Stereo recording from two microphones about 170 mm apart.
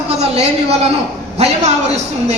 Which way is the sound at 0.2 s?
40° right (ahead or behind).